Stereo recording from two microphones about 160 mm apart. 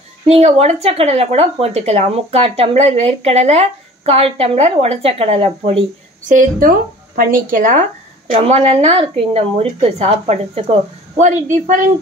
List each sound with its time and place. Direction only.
0.3 s speech: 40° right (ahead or behind)
6.2 s speech: 60° right (ahead or behind)
8.3 s speech: 40° right (ahead or behind)